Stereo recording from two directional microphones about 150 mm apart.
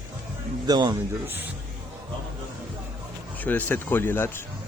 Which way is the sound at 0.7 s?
25° right (ahead or behind).